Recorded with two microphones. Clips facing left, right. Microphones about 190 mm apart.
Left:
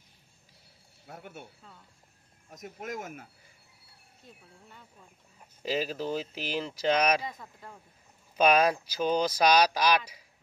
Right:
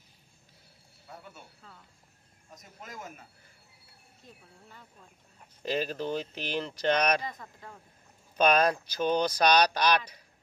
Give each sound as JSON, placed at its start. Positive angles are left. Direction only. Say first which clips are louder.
{"t": 1.0, "sound": "speech", "louder": "left 3 dB", "side_deg": 70}
{"t": 2.8, "sound": "speech", "louder": "left 6 dB", "side_deg": 75}
{"t": 4.6, "sound": "speech", "louder": "right 1 dB", "side_deg": 0}